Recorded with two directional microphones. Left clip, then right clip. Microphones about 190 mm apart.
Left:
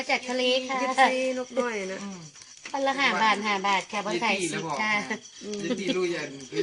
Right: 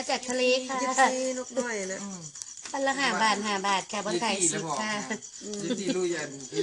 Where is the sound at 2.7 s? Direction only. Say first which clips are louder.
Left 2 dB; 5° left (ahead or behind).